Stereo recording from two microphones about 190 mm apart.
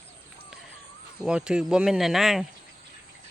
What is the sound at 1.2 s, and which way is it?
Speech, 5° right (ahead or behind).